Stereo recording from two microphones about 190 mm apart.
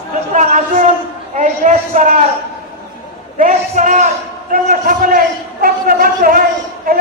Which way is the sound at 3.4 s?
40° right (ahead or behind).